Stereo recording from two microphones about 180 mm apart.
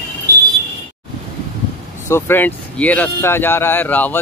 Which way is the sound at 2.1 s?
10° left (ahead or behind).